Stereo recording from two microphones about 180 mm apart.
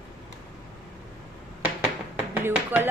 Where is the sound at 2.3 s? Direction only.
10° right (ahead or behind).